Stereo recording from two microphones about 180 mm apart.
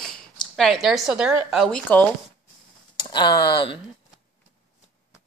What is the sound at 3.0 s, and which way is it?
Speech, 25° left (ahead or behind).